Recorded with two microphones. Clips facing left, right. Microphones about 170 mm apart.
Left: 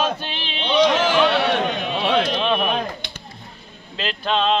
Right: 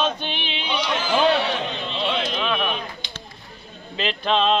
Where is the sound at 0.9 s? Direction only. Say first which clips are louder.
Left 2 dB; 85° left; by 2.2 s 65° left (ahead or behind).